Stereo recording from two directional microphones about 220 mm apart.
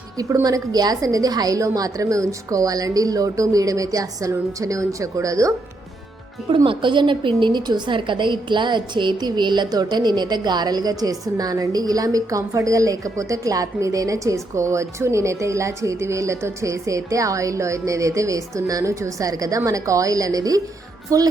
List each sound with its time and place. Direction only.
0.2 s a woman's voice: 15° right (ahead or behind)